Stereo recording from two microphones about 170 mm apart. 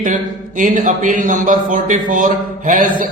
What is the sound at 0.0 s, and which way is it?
Speech, 50° right (ahead or behind).